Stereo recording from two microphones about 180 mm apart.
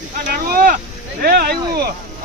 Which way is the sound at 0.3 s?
50° right (ahead or behind).